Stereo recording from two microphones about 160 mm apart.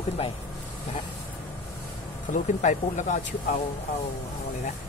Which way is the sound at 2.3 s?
50° left (ahead or behind).